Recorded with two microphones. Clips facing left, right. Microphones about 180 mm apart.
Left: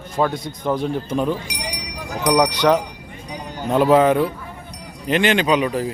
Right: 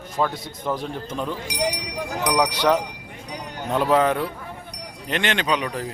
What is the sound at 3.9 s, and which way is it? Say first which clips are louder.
A man's voice: left 5 dB; 5° left (ahead or behind).